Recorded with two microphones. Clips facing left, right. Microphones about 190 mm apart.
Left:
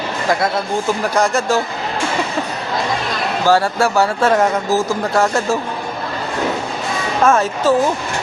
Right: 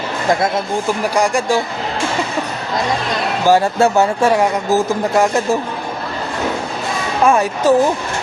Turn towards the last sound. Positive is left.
turn(degrees=-15)  # may be behind; listen again after turning